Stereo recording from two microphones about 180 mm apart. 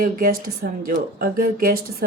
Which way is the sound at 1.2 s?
55° right (ahead or behind).